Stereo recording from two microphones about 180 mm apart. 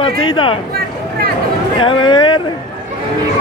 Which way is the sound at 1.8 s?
25° left (ahead or behind).